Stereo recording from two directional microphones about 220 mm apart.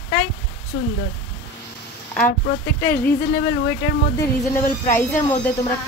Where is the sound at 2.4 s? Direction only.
45° left (ahead or behind).